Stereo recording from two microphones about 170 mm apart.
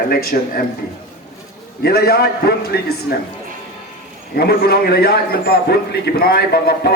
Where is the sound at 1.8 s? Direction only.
65° left (ahead or behind).